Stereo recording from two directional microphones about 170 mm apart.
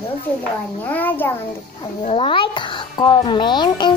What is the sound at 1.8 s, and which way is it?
A child's voice, 30° left (ahead or behind).